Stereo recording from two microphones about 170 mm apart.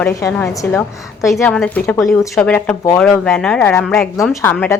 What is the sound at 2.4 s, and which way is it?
A woman's voice, 5° left (ahead or behind).